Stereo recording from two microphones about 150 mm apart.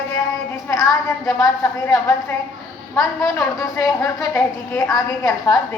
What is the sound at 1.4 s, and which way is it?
Speech, 15° left (ahead or behind).